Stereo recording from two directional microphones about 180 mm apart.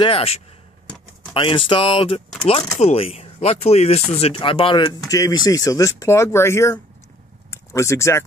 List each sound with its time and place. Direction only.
0.0 s speech: 30° left (ahead or behind); by 8.2 s 15° left (ahead or behind)